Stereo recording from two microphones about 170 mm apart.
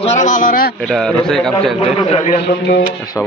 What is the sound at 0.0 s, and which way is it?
Speech, 45° left (ahead or behind).